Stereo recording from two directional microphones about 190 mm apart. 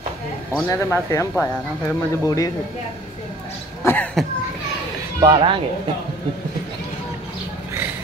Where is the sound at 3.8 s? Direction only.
10° left (ahead or behind).